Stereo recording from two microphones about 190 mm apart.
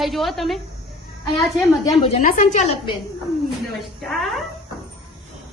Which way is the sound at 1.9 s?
30° left (ahead or behind).